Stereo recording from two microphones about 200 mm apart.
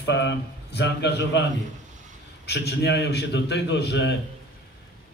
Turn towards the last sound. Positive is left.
turn(degrees=60)  # may be behind; listen again after turning